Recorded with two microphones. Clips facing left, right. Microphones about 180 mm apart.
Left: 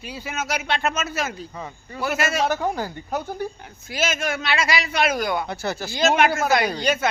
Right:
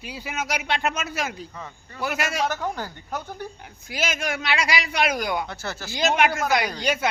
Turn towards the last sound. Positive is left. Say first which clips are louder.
# left 3 dB
turn(degrees=-10)  # may be behind; listen again after turning